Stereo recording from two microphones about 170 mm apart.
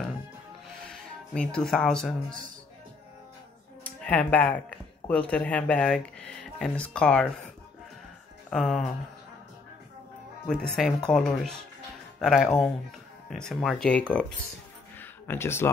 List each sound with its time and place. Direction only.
0.8 s speech: 5° left (ahead or behind)
3.8 s speech: 5° left (ahead or behind)
8.5 s speech: 5° left (ahead or behind)
10.5 s speech: 5° left (ahead or behind)
15.0 s music: 15° left (ahead or behind)